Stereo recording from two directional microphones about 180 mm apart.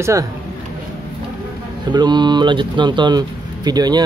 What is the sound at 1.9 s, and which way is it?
Speech, 25° right (ahead or behind).